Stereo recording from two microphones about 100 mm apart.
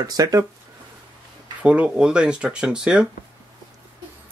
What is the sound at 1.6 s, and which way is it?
Speech, 10° right (ahead or behind).